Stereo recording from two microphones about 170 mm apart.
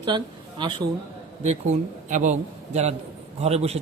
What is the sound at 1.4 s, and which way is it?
A man's voice, 45° right (ahead or behind).